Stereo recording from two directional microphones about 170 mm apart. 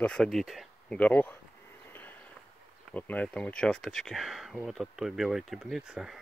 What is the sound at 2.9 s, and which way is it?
Speech, 10° left (ahead or behind).